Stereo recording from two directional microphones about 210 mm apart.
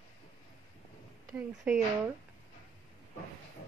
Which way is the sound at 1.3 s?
10° right (ahead or behind).